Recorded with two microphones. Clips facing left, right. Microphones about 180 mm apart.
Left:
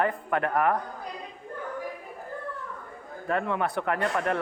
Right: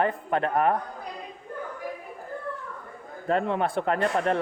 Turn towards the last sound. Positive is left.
turn(degrees=-30)  # may be behind; listen again after turning